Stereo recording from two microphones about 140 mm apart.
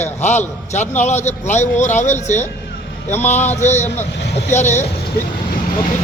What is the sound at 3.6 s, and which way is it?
A man's voice, 55° left (ahead or behind).